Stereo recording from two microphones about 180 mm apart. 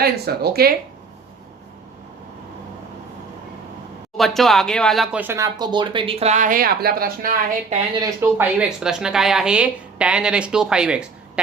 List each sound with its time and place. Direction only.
0.0 s speech: 60° right (ahead or behind)
4.2 s a woman's voice: centre (ahead or behind)
5.2 s speech: 15° right (ahead or behind); by 7.3 s 55° right (ahead or behind)
7.9 s a woman's voice: 15° right (ahead or behind)